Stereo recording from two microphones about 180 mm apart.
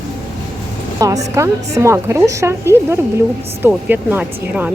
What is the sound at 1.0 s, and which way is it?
Speech, 20° right (ahead or behind).